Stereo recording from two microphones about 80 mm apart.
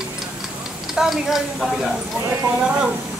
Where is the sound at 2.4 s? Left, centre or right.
Right.